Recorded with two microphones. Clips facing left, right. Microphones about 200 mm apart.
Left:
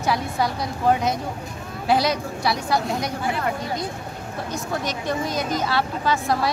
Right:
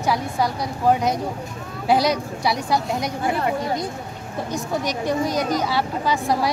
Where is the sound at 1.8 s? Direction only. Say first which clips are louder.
Right 2 dB; 15° right (ahead or behind).